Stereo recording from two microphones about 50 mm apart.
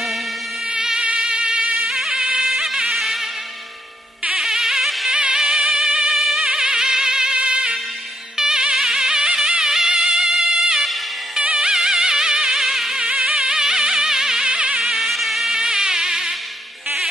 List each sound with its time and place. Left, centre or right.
0.7 s music: centre
4.3 s music: centre
5.1 s music: centre
14.8 s a sound: centre